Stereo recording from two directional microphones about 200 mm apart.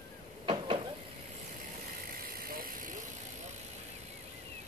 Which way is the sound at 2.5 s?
45° right (ahead or behind).